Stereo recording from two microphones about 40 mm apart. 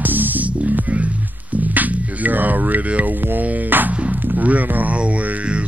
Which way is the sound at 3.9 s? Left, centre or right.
Right.